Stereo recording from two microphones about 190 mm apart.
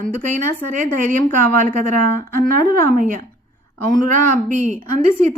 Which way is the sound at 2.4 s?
45° right (ahead or behind).